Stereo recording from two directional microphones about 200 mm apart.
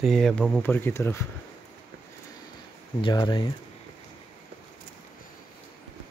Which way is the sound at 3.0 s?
25° left (ahead or behind).